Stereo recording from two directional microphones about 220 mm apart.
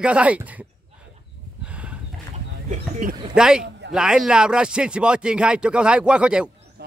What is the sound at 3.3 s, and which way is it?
Speech, 5° right (ahead or behind).